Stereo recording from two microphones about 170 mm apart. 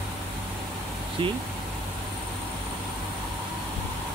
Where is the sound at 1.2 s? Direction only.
30° right (ahead or behind).